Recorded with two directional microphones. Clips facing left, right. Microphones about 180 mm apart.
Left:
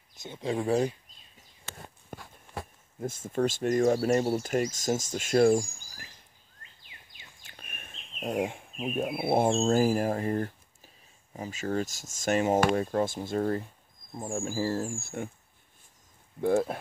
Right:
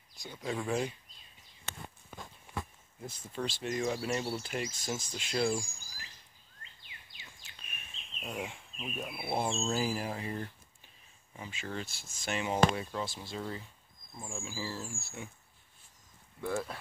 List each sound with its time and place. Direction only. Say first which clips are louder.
0.1 s speech: left 6 dB; 25° left (ahead or behind)
2.1 s walk: left 4 dB; 45° left (ahead or behind)
3.0 s speech: left 10 dB; 50° left (ahead or behind)
7.2 s speech: left 4 dB; 50° left (ahead or behind)
16.3 s speech: left 10 dB; 50° left (ahead or behind)